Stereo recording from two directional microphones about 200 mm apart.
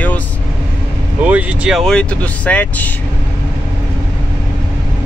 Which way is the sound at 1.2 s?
5° right (ahead or behind).